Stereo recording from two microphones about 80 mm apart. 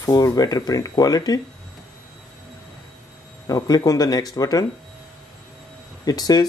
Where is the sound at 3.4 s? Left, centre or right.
Left.